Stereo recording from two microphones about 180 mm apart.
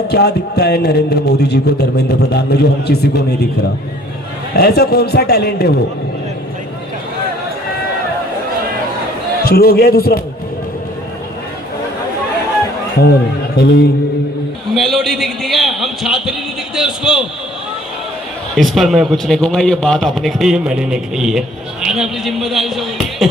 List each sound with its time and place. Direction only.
0.1 s a man's voice: 65° left (ahead or behind)
4.5 s a man's voice: 60° left (ahead or behind)
9.4 s a man's voice: 60° left (ahead or behind)
13.6 s a man's voice: 60° left (ahead or behind)
14.7 s a man's voice: centre (ahead or behind)
18.5 s a man's voice: centre (ahead or behind)